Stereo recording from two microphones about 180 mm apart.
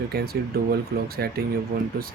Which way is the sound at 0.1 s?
60° right (ahead or behind).